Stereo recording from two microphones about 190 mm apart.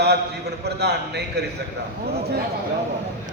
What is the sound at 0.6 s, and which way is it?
Speech, 60° right (ahead or behind).